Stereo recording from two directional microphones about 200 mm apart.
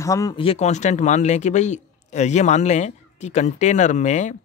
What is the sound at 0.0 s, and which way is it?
Speech, 15° left (ahead or behind).